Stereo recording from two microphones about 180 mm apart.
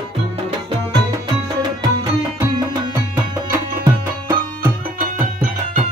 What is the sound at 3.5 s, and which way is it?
Tabla, 15° right (ahead or behind).